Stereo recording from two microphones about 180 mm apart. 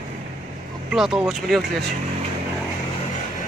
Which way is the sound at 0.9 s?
Centre (ahead or behind).